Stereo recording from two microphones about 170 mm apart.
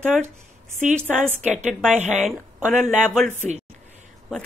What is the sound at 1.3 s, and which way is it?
Speech, 45° right (ahead or behind).